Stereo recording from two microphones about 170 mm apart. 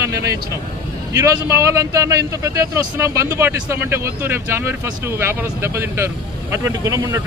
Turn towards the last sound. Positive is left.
turn(degrees=-15)  # may be behind; listen again after turning